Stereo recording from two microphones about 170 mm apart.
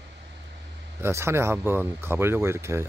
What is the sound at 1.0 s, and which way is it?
Speech, 15° right (ahead or behind).